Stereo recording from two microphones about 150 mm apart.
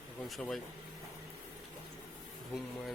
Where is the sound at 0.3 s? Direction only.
Centre (ahead or behind).